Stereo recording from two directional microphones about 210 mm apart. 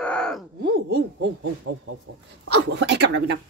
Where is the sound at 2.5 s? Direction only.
55° right (ahead or behind).